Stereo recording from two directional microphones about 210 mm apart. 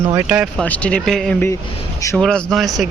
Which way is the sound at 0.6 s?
5° left (ahead or behind).